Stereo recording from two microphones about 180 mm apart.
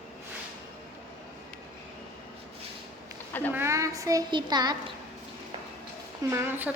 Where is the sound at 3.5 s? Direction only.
15° right (ahead or behind).